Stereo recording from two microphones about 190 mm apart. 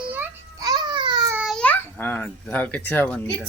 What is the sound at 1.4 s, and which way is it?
A child's voice, centre (ahead or behind).